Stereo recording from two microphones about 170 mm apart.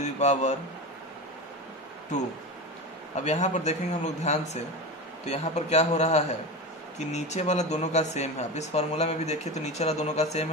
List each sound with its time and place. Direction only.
0.0 s a man's voice: 40° left (ahead or behind)
3.3 s speech: 45° left (ahead or behind)